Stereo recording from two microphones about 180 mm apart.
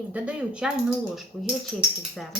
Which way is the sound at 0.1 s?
5° right (ahead or behind).